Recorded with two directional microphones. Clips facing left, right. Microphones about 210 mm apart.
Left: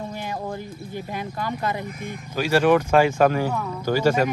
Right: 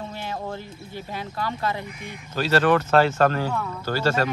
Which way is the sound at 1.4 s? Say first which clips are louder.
Even; 20° left (ahead or behind).